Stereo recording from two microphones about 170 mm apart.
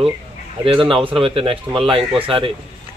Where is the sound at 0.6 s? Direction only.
30° right (ahead or behind).